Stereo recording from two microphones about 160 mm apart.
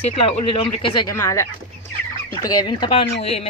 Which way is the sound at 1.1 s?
20° left (ahead or behind).